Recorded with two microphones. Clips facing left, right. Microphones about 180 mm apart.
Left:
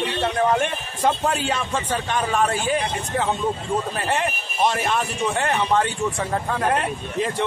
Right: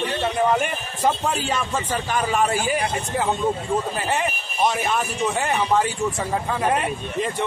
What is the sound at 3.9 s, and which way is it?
A man's voice, centre (ahead or behind).